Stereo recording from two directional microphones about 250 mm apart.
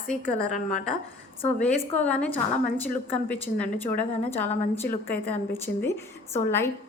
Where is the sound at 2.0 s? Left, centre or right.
Centre.